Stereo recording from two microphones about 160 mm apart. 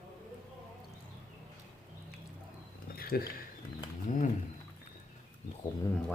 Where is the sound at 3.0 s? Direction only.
65° left (ahead or behind).